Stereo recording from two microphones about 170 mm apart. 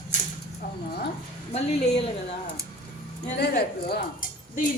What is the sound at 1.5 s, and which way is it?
Speech, 40° left (ahead or behind).